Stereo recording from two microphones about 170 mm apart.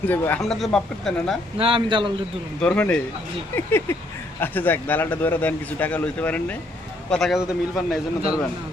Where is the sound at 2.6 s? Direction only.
5° left (ahead or behind).